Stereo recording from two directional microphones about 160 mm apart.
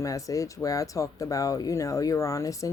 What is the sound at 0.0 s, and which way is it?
Speech, 20° left (ahead or behind).